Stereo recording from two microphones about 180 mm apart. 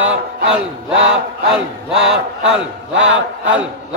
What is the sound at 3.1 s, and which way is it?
Speech, 85° right.